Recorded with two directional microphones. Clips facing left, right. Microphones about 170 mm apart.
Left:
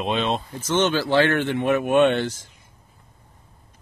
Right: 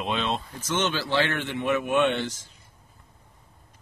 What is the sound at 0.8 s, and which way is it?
Speech, 50° left (ahead or behind).